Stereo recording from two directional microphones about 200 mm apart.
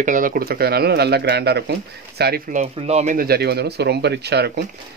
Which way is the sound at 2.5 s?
35° right (ahead or behind).